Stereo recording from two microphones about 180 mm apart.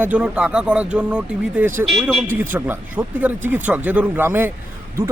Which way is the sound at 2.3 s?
10° right (ahead or behind).